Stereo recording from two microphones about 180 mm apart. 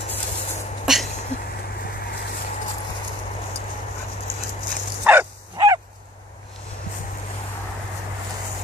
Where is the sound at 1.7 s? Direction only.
60° left (ahead or behind).